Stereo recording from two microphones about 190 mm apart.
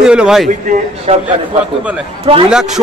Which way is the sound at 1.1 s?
30° right (ahead or behind).